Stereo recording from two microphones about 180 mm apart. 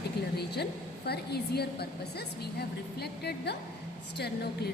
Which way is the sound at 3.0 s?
65° left (ahead or behind).